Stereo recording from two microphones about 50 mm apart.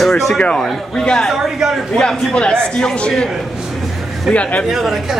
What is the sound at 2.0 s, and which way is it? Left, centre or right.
A man's voice, centre.